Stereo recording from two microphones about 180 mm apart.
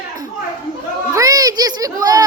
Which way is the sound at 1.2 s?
20° right (ahead or behind).